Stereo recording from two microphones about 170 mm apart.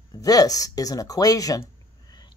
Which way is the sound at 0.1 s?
20° left (ahead or behind).